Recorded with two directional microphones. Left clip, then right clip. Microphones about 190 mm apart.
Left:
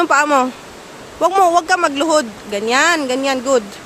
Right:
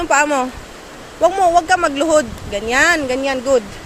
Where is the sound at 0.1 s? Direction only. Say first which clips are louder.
Left 2 dB; 30° left (ahead or behind).